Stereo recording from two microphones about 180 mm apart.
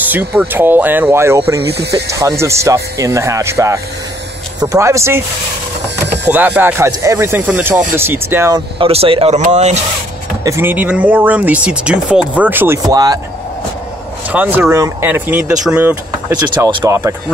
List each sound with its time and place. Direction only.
0.0 s speech: 10° right (ahead or behind)
6.2 s speech: 10° right (ahead or behind); by 9.8 s 40° right (ahead or behind)
10.4 s speech: 15° right (ahead or behind)
14.3 s speech: 10° right (ahead or behind)
16.5 s speech: 20° right (ahead or behind)